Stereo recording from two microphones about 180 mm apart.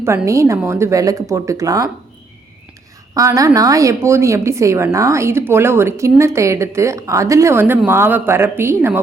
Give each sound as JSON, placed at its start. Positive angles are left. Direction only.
{"t": 0.3, "sound": "speech", "side_deg": -15}
{"t": 3.2, "sound": "speech", "side_deg": -20}